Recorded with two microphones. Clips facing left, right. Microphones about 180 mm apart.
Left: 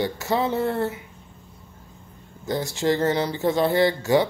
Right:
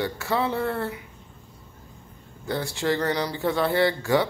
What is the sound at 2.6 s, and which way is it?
Speech, 40° left (ahead or behind).